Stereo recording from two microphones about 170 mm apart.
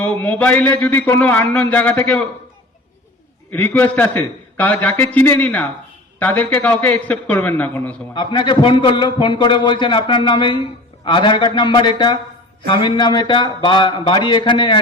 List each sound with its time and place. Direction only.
0.0 s a man's voice: 10° left (ahead or behind)
3.5 s a man's voice: 10° left (ahead or behind)
8.1 s a man's voice: 25° left (ahead or behind)